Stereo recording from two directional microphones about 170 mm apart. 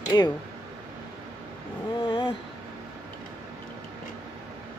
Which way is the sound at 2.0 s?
25° left (ahead or behind).